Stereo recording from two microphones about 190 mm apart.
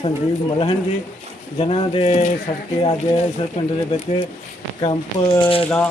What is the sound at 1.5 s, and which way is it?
Speech, 30° left (ahead or behind).